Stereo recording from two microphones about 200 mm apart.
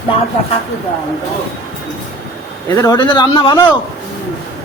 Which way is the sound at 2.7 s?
20° left (ahead or behind).